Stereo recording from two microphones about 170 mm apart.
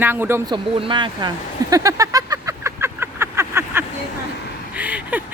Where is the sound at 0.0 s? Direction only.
10° right (ahead or behind).